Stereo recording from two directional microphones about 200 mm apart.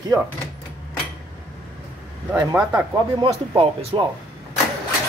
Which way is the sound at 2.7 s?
20° right (ahead or behind).